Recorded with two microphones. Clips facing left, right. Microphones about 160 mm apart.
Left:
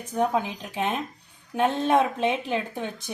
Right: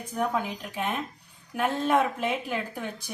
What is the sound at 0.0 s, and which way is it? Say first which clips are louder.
Speech: left 4 dB; 20° left (ahead or behind).